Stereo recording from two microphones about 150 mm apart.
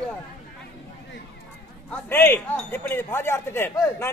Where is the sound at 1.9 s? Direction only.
15° left (ahead or behind).